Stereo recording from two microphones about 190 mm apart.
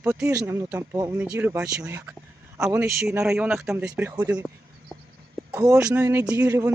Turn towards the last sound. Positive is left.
turn(degrees=-15)  # may be behind; listen again after turning